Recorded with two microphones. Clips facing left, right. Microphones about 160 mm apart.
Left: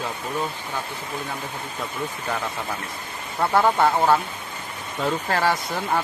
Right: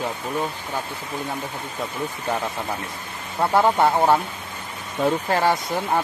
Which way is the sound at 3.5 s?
15° right (ahead or behind).